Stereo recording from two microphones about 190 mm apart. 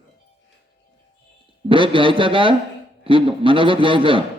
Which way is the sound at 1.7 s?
25° right (ahead or behind).